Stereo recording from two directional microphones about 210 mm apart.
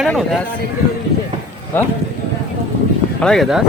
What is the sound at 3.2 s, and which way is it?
Speech, centre (ahead or behind).